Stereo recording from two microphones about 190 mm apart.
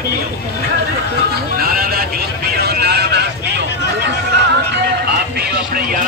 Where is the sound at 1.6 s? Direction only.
50° right (ahead or behind).